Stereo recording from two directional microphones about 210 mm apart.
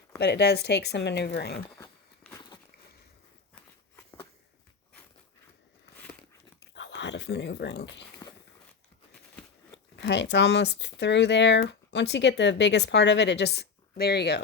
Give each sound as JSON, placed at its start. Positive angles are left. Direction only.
{"t": 0.2, "sound": "speech", "side_deg": 55}
{"t": 1.8, "sound": "walk", "side_deg": 15}
{"t": 6.7, "sound": "speech", "side_deg": 60}
{"t": 9.9, "sound": "speech", "side_deg": 55}